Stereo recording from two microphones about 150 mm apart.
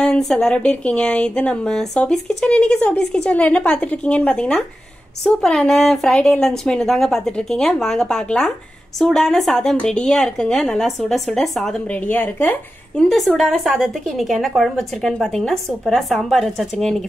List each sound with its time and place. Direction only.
0.0 s speech: 5° left (ahead or behind)
13.1 s speech: centre (ahead or behind)